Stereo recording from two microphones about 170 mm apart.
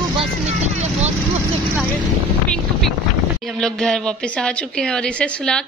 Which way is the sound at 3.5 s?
5° left (ahead or behind).